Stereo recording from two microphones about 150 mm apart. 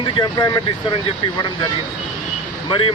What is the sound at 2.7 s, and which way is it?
Speech, 35° left (ahead or behind).